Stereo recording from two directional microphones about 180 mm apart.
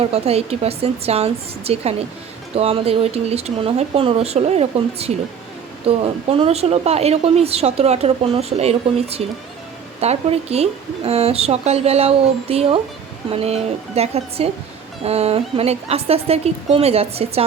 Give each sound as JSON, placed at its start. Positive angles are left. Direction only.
{"t": 0.0, "sound": "a woman's voice", "side_deg": -35}